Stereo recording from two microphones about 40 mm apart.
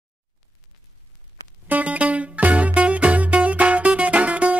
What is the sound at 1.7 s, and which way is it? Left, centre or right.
Music, right.